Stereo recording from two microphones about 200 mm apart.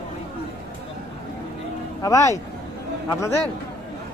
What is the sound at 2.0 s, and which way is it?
Speech, 15° left (ahead or behind).